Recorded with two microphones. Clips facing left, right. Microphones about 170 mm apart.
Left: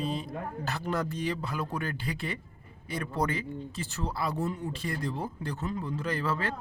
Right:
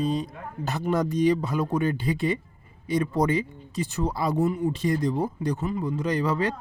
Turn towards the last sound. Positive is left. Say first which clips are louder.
# right 6 dB
turn(degrees=-15)  # may be behind; listen again after turning